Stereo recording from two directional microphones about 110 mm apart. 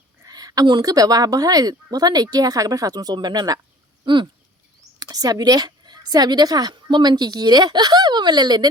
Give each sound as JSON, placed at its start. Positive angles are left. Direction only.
{"t": 0.3, "sound": "a woman's voice", "side_deg": -35}
{"t": 4.0, "sound": "a sound", "side_deg": -45}
{"t": 4.9, "sound": "a woman's voice", "side_deg": -35}